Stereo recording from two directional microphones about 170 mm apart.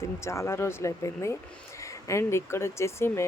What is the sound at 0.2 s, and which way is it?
Speech, 15° left (ahead or behind).